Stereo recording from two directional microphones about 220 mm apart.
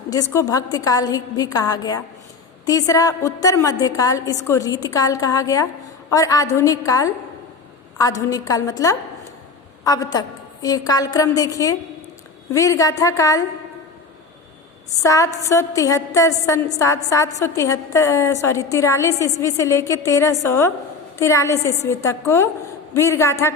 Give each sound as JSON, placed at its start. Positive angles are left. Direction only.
{"t": 0.1, "sound": "a woman's voice", "side_deg": 15}
{"t": 15.0, "sound": "a woman's voice", "side_deg": 15}